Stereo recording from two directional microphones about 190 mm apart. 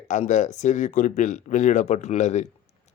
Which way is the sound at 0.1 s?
40° left (ahead or behind).